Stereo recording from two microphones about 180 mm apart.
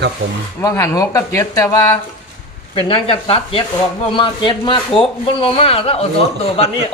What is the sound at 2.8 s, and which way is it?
A man's voice, 30° left (ahead or behind).